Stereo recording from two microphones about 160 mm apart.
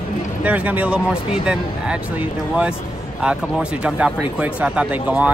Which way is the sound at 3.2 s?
5° right (ahead or behind).